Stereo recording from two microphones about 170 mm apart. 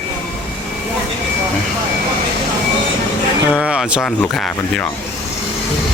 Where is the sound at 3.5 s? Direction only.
5° right (ahead or behind).